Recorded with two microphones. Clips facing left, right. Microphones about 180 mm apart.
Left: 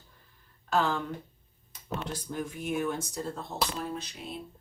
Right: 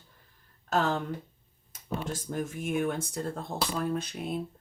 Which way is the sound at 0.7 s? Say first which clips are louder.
Even; 45° right (ahead or behind).